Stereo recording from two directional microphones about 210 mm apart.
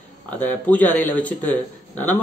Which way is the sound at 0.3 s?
5° left (ahead or behind).